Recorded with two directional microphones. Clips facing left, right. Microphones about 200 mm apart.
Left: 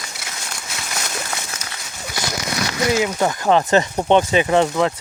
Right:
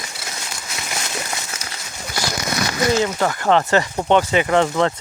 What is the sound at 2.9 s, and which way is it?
Speech, 10° left (ahead or behind).